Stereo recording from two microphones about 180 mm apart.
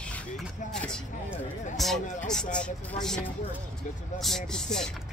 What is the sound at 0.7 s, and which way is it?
Speech, 5° left (ahead or behind).